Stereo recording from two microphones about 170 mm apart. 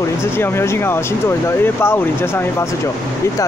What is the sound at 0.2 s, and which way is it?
Speech, 15° left (ahead or behind).